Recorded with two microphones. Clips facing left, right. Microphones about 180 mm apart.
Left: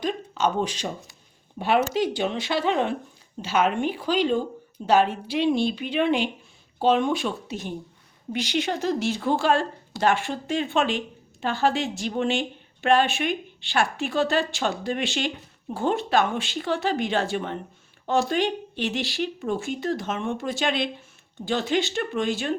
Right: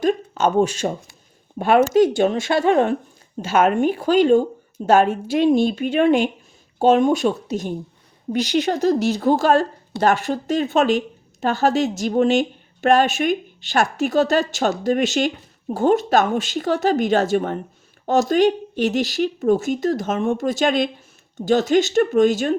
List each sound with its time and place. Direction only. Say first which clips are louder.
0.0 s a woman's voice: right 6 dB; 45° right (ahead or behind)